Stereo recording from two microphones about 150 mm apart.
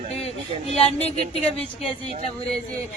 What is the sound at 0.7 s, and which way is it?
Speech, 45° left (ahead or behind).